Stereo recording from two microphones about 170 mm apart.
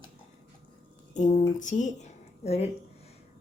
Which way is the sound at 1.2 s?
45° left (ahead or behind).